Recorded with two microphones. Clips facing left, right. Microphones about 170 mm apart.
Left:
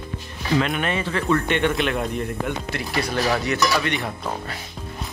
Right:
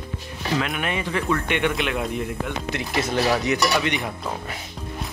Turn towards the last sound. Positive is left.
turn(degrees=-15)  # may be behind; listen again after turning